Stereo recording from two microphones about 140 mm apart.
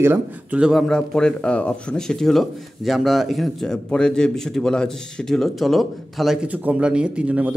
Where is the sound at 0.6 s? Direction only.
Centre (ahead or behind).